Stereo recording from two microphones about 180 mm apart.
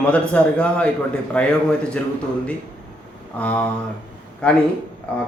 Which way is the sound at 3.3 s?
5° left (ahead or behind).